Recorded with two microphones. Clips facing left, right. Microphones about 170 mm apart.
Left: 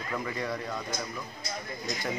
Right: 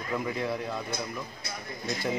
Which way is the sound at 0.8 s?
60° right (ahead or behind).